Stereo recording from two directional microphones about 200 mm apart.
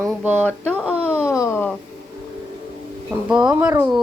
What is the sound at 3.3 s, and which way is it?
Speech, 5° right (ahead or behind).